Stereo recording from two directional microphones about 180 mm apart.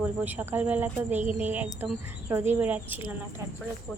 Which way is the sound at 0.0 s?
10° right (ahead or behind).